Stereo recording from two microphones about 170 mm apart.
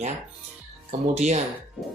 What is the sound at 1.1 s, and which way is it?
Speech, 40° right (ahead or behind).